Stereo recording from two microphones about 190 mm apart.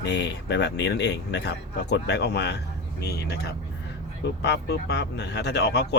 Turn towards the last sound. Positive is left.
turn(degrees=65)  # may be behind; listen again after turning